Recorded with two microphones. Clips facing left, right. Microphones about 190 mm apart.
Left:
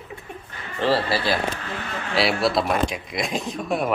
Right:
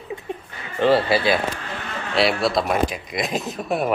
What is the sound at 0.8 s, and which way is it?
Speech, 20° right (ahead or behind).